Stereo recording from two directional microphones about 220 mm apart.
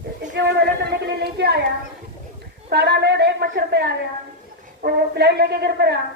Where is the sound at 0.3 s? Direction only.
50° right (ahead or behind).